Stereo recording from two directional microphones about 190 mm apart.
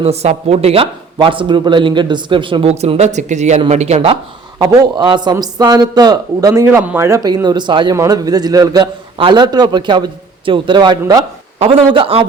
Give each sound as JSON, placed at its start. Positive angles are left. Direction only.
{"t": 0.0, "sound": "a man's voice", "side_deg": -35}
{"t": 11.6, "sound": "a man's voice", "side_deg": -30}